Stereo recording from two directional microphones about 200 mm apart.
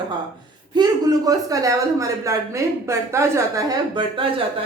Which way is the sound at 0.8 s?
20° right (ahead or behind).